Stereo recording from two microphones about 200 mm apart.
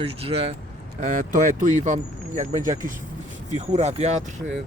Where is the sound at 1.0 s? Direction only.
40° right (ahead or behind).